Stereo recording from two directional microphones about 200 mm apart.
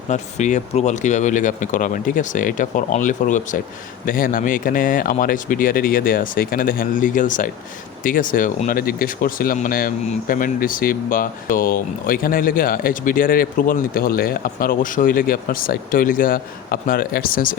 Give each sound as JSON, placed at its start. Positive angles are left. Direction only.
{"t": 0.1, "sound": "speech", "side_deg": 35}